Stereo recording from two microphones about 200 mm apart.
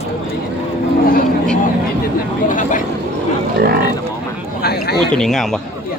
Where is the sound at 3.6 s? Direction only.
50° right (ahead or behind).